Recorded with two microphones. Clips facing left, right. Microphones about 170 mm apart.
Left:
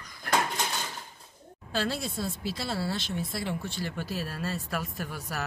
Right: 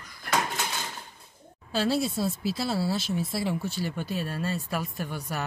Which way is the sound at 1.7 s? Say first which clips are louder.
Right 5 dB; centre (ahead or behind).